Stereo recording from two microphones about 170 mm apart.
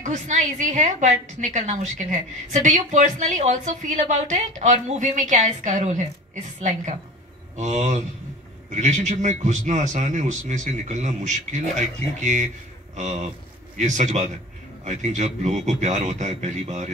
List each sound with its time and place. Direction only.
0.0 s a woman's voice: 45° right (ahead or behind)